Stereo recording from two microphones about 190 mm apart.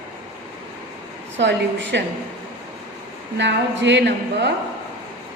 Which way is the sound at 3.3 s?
70° right (ahead or behind).